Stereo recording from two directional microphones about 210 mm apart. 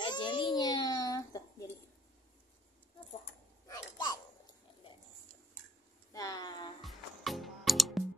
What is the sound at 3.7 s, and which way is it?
Speech, 15° left (ahead or behind).